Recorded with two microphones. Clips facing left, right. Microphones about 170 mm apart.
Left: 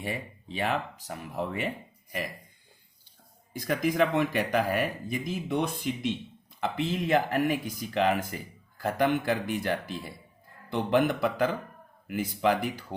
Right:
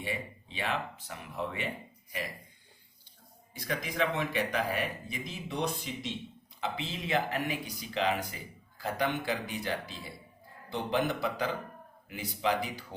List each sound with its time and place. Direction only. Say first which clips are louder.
0.0 s speech: left 2 dB; 45° left (ahead or behind)
3.7 s speech: left 7 dB; 50° left (ahead or behind)